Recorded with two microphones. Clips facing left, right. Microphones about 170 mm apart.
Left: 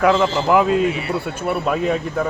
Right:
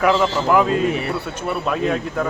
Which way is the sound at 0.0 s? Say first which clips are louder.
Left 1 dB; centre (ahead or behind).